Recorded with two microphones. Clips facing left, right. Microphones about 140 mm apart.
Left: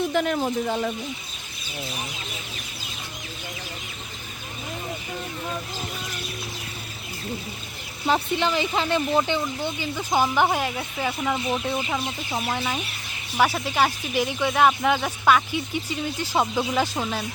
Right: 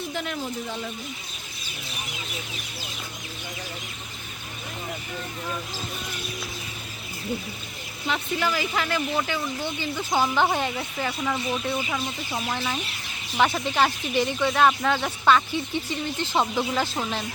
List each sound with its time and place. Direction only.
0.1 s speech: 55° left (ahead or behind)
8.4 s speech: 25° left (ahead or behind)
9.6 s speech: 15° left (ahead or behind)